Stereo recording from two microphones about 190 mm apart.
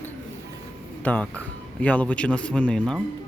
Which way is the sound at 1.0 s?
5° left (ahead or behind).